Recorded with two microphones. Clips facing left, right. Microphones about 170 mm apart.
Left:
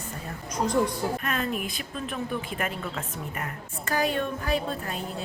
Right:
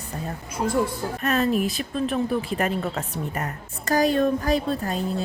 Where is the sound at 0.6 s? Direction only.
5° right (ahead or behind).